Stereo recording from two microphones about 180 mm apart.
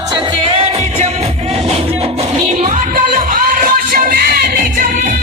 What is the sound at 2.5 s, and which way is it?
Music, 40° right (ahead or behind).